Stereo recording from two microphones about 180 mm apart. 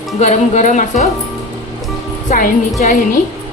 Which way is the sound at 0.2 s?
40° left (ahead or behind).